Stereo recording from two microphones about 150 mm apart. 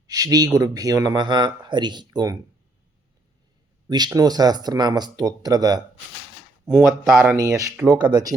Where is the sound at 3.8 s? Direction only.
25° right (ahead or behind).